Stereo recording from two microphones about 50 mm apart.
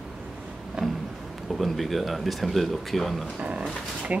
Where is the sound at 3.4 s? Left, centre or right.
Right.